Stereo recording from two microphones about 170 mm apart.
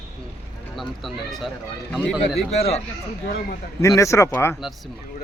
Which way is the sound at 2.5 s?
40° left (ahead or behind).